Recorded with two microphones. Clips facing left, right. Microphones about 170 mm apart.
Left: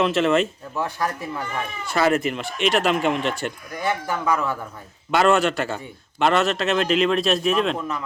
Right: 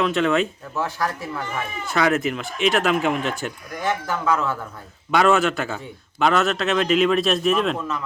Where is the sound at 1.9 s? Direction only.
Centre (ahead or behind).